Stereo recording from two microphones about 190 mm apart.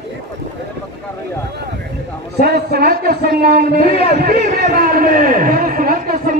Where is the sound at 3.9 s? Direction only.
35° left (ahead or behind).